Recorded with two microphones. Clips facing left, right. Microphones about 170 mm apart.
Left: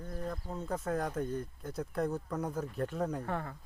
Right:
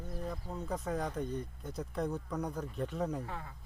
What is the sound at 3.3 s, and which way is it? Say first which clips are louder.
Speech: left 7 dB; 55° left (ahead or behind).